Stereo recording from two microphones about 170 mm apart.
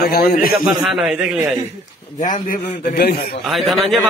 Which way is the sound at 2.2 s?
50° left (ahead or behind).